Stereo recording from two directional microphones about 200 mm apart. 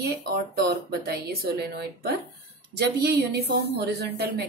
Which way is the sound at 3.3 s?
55° right (ahead or behind).